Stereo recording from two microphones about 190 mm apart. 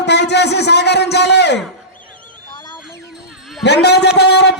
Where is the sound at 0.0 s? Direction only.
65° left (ahead or behind).